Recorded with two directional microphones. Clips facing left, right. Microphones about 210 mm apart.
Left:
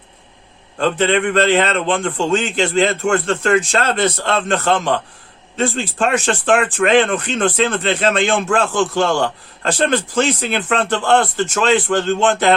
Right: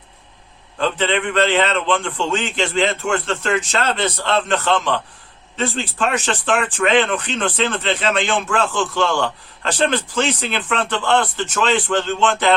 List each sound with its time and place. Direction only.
0.8 s a man's voice: 45° left (ahead or behind)